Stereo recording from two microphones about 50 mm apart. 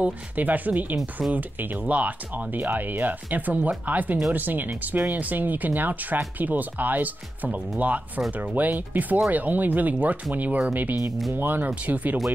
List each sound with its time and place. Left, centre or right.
0.4 s speech: right
8.3 s speech: right